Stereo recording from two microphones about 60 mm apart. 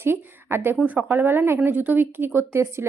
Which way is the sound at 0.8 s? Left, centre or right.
Right.